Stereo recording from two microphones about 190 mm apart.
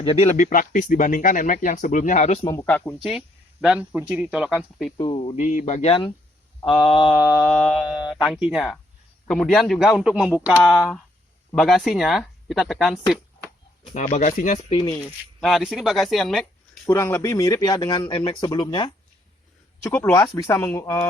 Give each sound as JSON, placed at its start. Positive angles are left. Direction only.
{"t": 0.0, "sound": "speech", "side_deg": 30}
{"t": 2.6, "sound": "speech", "side_deg": 5}
{"t": 3.0, "sound": "speech", "side_deg": -5}
{"t": 4.4, "sound": "a man's voice", "side_deg": 5}
{"t": 4.9, "sound": "speech", "side_deg": 25}
{"t": 7.4, "sound": "a man's voice", "side_deg": 0}
{"t": 13.8, "sound": "speech", "side_deg": 35}
{"t": 14.8, "sound": "speech", "side_deg": 20}
{"t": 15.4, "sound": "speech", "side_deg": 0}
{"t": 19.8, "sound": "speech", "side_deg": 10}